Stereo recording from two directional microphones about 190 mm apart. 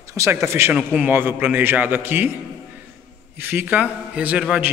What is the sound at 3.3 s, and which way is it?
A man's voice, 10° right (ahead or behind).